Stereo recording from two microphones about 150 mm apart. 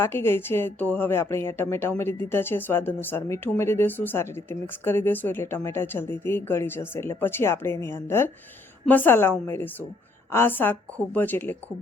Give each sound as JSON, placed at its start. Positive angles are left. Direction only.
{"t": 0.0, "sound": "a woman's voice", "side_deg": 15}
{"t": 10.3, "sound": "a woman's voice", "side_deg": 15}